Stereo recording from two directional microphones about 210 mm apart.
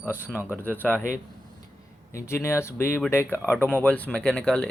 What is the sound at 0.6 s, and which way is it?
Speech, 10° left (ahead or behind).